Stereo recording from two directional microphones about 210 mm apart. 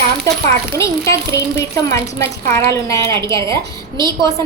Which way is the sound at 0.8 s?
15° left (ahead or behind).